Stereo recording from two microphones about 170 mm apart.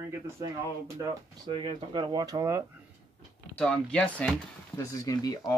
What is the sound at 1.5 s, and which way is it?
Speech, 30° right (ahead or behind).